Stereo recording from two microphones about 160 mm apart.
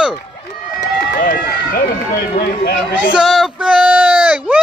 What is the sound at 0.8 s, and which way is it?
Run, 60° left (ahead or behind).